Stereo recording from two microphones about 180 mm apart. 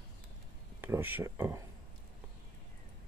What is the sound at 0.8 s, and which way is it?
Speech, 10° right (ahead or behind).